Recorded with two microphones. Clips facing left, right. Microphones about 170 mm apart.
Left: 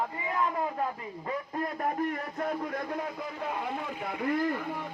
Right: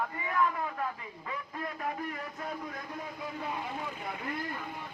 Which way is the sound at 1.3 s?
45° left (ahead or behind).